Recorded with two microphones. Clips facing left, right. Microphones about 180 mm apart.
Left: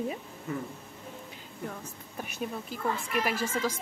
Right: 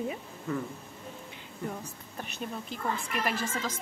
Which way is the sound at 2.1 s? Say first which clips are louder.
Left 2 dB; 10° left (ahead or behind).